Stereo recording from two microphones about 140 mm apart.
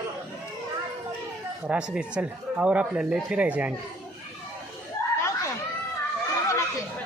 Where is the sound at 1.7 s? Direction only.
10° right (ahead or behind).